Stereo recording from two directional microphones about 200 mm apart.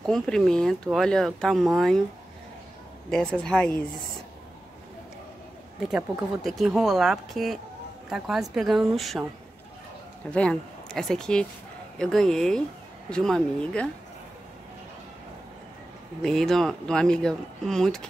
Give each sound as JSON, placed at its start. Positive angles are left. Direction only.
{"t": 0.0, "sound": "speech", "side_deg": 0}
{"t": 3.1, "sound": "speech", "side_deg": 5}
{"t": 5.8, "sound": "speech", "side_deg": -5}
{"t": 10.3, "sound": "speech", "side_deg": 5}
{"t": 16.2, "sound": "speech", "side_deg": 0}